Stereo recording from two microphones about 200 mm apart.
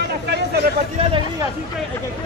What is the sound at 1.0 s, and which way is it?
Speech, 30° right (ahead or behind).